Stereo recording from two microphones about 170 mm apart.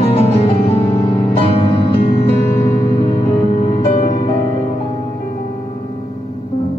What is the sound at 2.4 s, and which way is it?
Music, 15° left (ahead or behind).